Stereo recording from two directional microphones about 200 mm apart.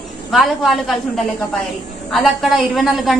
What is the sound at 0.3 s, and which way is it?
A woman's voice, centre (ahead or behind).